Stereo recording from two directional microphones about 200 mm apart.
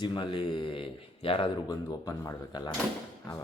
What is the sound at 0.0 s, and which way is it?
A man's voice, 25° left (ahead or behind).